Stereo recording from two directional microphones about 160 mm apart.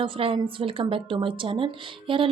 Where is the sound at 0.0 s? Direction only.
35° right (ahead or behind).